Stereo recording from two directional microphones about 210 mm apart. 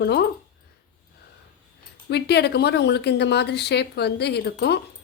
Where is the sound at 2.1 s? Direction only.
50° left (ahead or behind).